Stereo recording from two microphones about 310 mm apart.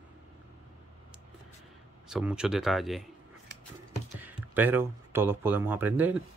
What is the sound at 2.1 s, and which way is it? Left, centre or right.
Speech, centre.